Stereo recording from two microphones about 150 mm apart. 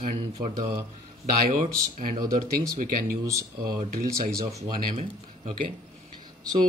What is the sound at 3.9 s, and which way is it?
Speech, 75° right (ahead or behind).